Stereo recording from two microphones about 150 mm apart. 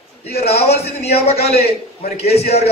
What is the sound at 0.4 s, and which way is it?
A man's voice, 45° left (ahead or behind).